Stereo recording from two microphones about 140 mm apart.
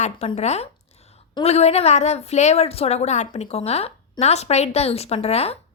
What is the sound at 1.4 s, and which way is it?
A woman's voice, 50° left (ahead or behind).